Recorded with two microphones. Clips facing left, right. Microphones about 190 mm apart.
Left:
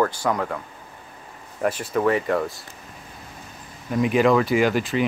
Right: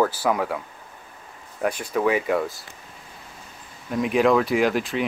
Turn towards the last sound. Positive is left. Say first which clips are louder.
# left 1 dB
turn(degrees=0)  # may be behind; listen again after turning